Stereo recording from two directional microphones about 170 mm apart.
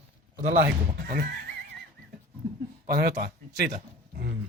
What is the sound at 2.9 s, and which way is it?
Speech, 65° right (ahead or behind).